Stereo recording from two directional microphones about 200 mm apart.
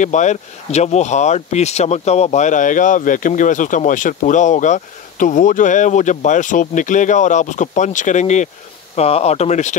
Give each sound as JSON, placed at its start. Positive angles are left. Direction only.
{"t": 0.0, "sound": "speech", "side_deg": 35}